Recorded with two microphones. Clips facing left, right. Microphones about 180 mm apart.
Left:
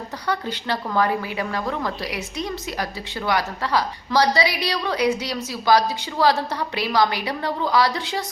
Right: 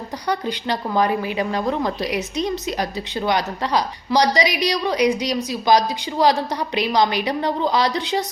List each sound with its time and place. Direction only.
0.3 s a woman's voice: 15° right (ahead or behind)